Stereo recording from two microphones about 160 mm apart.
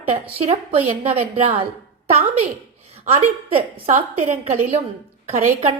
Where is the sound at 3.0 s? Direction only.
45° right (ahead or behind).